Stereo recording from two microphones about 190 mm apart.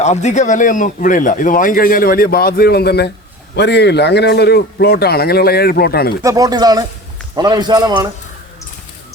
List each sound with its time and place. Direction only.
0.0 s a man's voice: 35° left (ahead or behind); by 6.1 s 55° left (ahead or behind)
6.2 s a man's voice: 20° right (ahead or behind)